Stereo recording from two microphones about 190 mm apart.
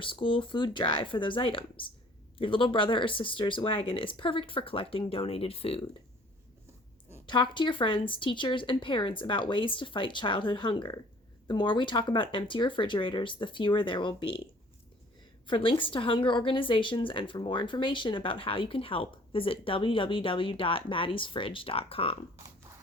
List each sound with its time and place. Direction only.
0.0 s a woman's voice: 25° left (ahead or behind)
7.3 s a woman's voice: 25° left (ahead or behind)
15.4 s a woman's voice: 25° left (ahead or behind)